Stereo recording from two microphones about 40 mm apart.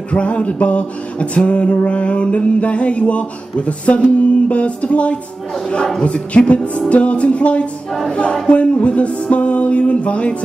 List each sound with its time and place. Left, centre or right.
0.1 s music: left